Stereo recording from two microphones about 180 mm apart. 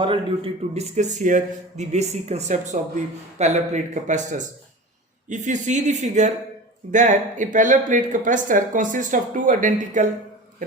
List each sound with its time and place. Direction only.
0.0 s a man's voice: 30° right (ahead or behind); by 10.1 s 45° right (ahead or behind)